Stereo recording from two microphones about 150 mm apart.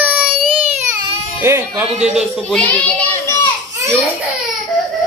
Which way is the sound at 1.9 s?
45° right (ahead or behind).